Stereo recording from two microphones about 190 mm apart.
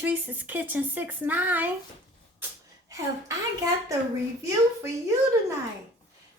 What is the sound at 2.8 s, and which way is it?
A woman's voice, 15° right (ahead or behind).